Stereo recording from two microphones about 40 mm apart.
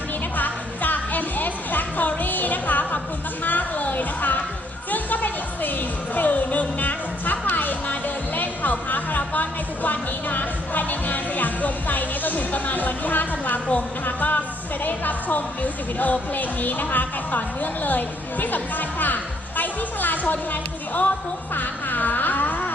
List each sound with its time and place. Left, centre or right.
0.3 s music: left
14.0 s a woman's voice: left
21.5 s music: left